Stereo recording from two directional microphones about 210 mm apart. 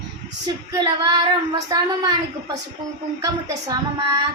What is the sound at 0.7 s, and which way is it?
Child singing, 20° right (ahead or behind).